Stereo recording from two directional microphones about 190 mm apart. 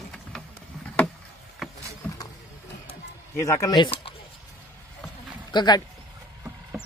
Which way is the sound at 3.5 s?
20° left (ahead or behind).